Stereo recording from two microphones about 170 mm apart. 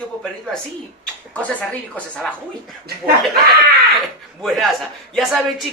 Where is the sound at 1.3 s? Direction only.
10° left (ahead or behind).